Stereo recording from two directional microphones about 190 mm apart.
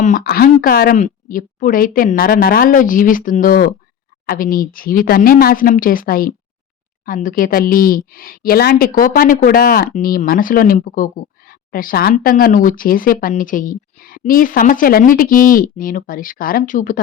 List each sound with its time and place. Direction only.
0.0 s speech: 50° left (ahead or behind)